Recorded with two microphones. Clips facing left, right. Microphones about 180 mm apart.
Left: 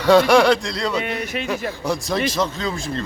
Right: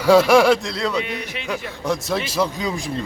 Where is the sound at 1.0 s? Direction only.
50° left (ahead or behind).